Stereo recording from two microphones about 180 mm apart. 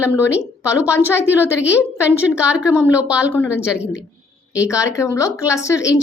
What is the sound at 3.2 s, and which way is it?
Speech, 10° left (ahead or behind).